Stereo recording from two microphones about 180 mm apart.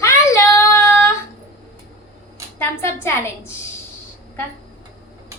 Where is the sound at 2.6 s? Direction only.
15° left (ahead or behind).